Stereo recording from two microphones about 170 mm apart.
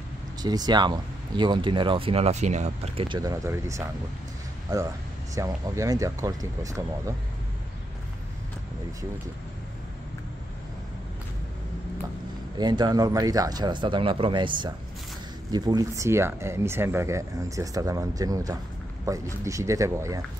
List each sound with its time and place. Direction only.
0.4 s speech: 25° right (ahead or behind)
3.3 s speech: 15° right (ahead or behind)
12.5 s speech: 25° right (ahead or behind)